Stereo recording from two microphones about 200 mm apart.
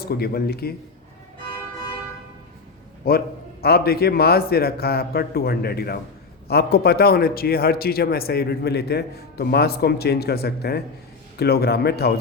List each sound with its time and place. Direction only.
0.0 s a man's voice: 50° left (ahead or behind)
3.0 s a man's voice: 50° left (ahead or behind)